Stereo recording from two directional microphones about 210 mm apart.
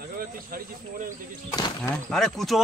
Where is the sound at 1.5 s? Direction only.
20° left (ahead or behind).